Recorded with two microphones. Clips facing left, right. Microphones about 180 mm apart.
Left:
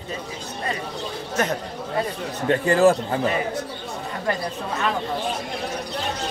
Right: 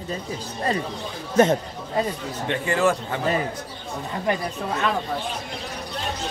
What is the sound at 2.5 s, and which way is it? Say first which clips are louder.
Speech: left 5 dB; 35° left (ahead or behind).